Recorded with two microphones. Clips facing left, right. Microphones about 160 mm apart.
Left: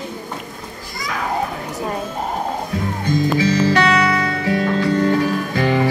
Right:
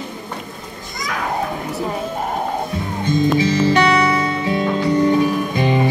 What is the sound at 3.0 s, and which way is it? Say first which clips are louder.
Music: right 2 dB; 20° right (ahead or behind).